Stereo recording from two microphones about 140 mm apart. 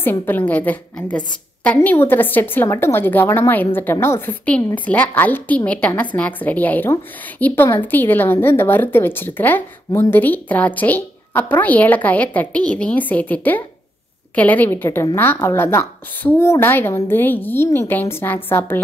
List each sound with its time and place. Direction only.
0.0 s a woman's voice: 15° left (ahead or behind)